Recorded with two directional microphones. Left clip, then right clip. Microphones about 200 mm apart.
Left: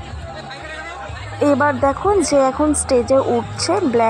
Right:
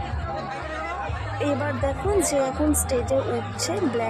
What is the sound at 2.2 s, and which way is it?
A woman's voice, 15° left (ahead or behind).